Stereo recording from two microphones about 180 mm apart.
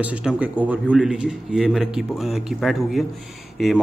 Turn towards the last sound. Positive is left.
turn(degrees=0)  # may be behind; listen again after turning